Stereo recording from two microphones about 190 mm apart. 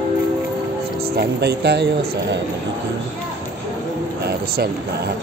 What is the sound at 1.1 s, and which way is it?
Speech, 60° right (ahead or behind).